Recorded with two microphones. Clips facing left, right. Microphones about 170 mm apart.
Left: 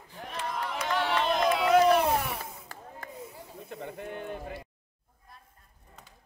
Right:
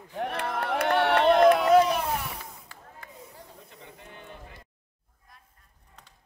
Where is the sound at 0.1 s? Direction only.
65° right (ahead or behind).